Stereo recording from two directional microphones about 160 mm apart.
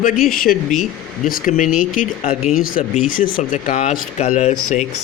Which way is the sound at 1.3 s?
55° left (ahead or behind).